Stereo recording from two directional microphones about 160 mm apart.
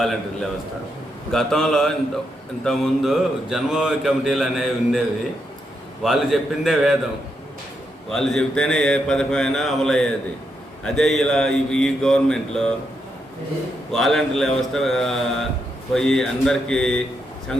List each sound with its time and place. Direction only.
0.0 s speech: centre (ahead or behind)
8.1 s speech: 5° left (ahead or behind)
13.9 s speech: 5° left (ahead or behind)